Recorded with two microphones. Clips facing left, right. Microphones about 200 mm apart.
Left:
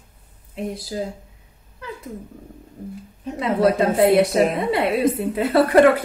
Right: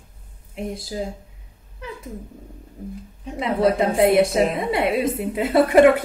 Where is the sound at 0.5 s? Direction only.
25° right (ahead or behind).